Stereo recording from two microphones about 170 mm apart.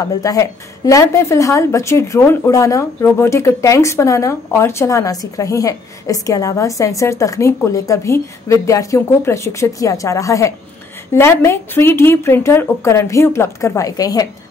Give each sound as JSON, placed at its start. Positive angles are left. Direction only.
{"t": 0.0, "sound": "a woman's voice", "side_deg": 20}